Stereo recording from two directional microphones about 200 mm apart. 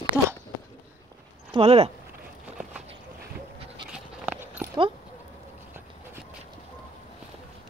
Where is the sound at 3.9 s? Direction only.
5° right (ahead or behind).